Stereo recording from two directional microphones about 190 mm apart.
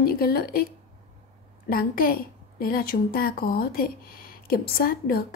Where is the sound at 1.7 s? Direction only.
50° left (ahead or behind).